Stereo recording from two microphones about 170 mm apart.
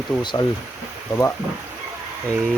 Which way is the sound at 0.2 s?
25° left (ahead or behind).